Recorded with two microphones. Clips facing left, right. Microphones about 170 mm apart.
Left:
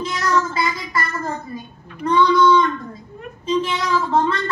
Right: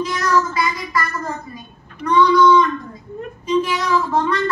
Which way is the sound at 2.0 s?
25° left (ahead or behind).